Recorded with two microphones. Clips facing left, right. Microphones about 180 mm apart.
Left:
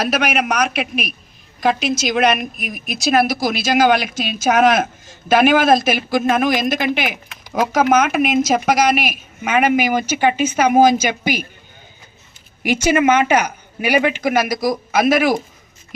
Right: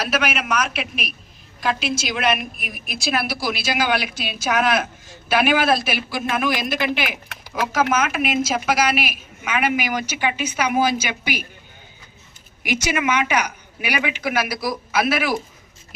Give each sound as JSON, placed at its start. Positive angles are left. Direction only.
{"t": 0.1, "sound": "a woman's voice", "side_deg": 50}
{"t": 12.6, "sound": "a woman's voice", "side_deg": 45}